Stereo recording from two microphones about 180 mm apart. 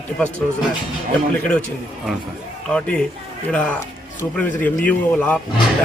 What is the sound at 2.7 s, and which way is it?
A man's voice, 5° left (ahead or behind).